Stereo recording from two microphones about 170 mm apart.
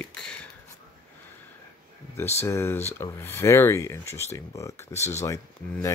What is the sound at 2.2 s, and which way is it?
Speech, 15° left (ahead or behind).